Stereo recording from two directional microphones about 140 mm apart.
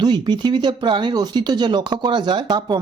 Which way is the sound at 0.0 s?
30° right (ahead or behind).